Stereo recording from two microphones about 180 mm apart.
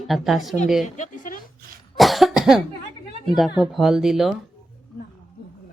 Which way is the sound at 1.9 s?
Centre (ahead or behind).